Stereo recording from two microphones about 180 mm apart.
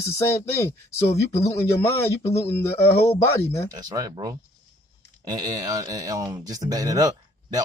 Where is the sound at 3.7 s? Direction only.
20° right (ahead or behind).